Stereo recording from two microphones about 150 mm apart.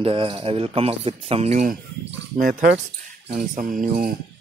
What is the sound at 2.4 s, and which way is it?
Speech, 60° right (ahead or behind).